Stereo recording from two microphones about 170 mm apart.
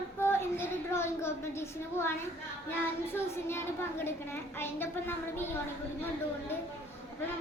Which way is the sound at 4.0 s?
15° left (ahead or behind).